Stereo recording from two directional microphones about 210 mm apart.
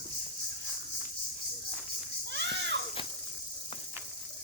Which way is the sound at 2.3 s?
55° right (ahead or behind).